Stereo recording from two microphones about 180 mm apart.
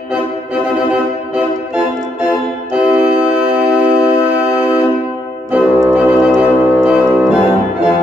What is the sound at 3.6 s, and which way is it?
Music, 5° right (ahead or behind).